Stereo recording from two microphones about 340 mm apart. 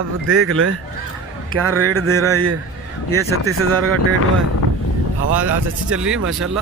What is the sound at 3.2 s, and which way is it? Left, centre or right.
Speech, right.